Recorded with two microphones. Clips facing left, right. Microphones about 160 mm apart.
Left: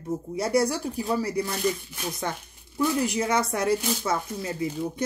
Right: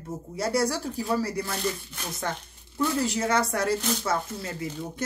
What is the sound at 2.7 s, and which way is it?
Speech, 15° left (ahead or behind).